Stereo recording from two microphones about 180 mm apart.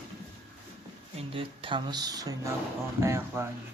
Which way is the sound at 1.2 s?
30° right (ahead or behind).